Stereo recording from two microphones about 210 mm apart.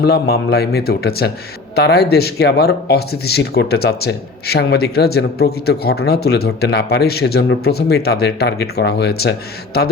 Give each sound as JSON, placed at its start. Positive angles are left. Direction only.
{"t": 0.0, "sound": "speech", "side_deg": 50}